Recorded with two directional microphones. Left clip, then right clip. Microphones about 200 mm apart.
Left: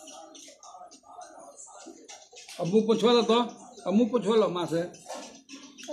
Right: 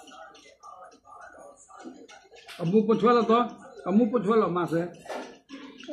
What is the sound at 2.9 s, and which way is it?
A man's voice, 15° left (ahead or behind).